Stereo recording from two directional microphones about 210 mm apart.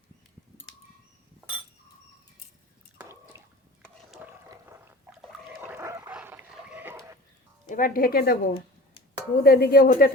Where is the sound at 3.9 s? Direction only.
Centre (ahead or behind).